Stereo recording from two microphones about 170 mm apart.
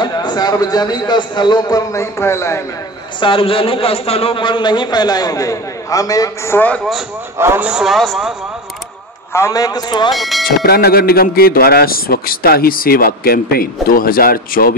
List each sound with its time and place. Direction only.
0.0 s a man's voice: 25° left (ahead or behind)
3.2 s a man's voice: 30° left (ahead or behind); by 6.8 s 10° left (ahead or behind)
7.3 s a man's voice: 15° right (ahead or behind)
9.3 s a man's voice: 20° left (ahead or behind)
10.1 s speech: centre (ahead or behind)
10.4 s speech: 65° left (ahead or behind)